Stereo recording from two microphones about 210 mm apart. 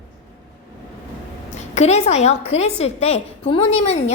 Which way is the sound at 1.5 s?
30° left (ahead or behind).